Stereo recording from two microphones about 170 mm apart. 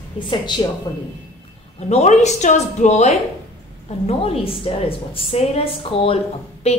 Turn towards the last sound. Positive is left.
turn(degrees=40)  # may be behind; listen again after turning